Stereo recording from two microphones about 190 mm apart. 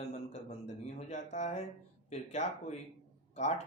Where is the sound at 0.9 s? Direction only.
40° left (ahead or behind).